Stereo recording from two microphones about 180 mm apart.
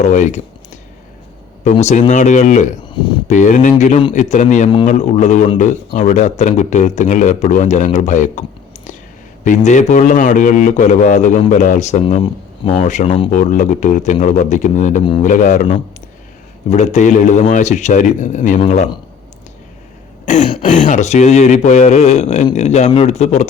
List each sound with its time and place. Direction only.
0.0 s speech: 40° left (ahead or behind)
2.9 s a sound: 25° left (ahead or behind)
3.2 s a man's voice: 45° left (ahead or behind)
20.2 s throat clearing: 40° left (ahead or behind)
20.6 s speech: 45° left (ahead or behind)